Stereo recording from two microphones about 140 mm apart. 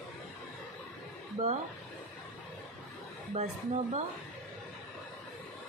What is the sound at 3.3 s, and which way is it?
Speech, 55° right (ahead or behind).